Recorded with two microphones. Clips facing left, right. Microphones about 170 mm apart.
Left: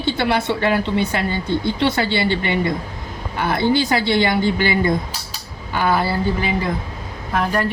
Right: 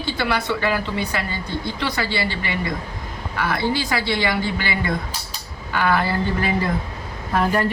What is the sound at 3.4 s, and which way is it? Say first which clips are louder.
Speech: left 5 dB; 25° left (ahead or behind).